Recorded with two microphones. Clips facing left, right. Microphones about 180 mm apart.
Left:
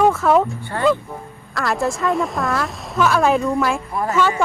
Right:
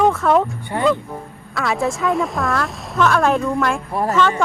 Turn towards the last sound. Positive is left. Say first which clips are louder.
# right 1 dB
turn(degrees=10)  # may be behind; listen again after turning